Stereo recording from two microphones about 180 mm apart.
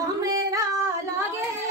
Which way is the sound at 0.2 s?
20° right (ahead or behind).